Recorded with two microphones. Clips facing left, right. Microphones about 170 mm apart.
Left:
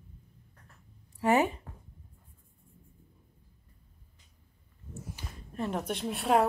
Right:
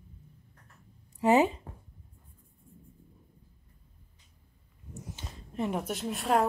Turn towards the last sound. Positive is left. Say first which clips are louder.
# left 1 dB
turn(degrees=0)  # may be behind; listen again after turning